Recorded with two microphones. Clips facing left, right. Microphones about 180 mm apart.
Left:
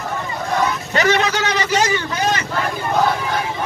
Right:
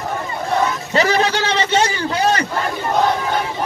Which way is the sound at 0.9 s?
30° right (ahead or behind).